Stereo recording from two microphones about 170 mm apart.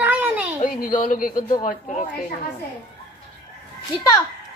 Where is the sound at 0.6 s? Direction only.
55° left (ahead or behind).